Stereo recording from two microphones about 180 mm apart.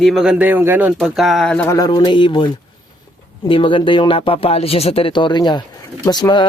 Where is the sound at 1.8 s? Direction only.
20° left (ahead or behind).